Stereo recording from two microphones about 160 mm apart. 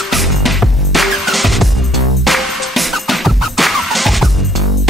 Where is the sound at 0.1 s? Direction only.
Centre (ahead or behind).